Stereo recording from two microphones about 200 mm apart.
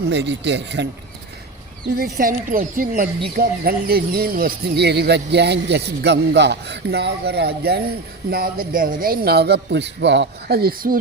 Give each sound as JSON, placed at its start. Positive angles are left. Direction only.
{"t": 0.1, "sound": "speech", "side_deg": -60}
{"t": 1.9, "sound": "speech", "side_deg": -45}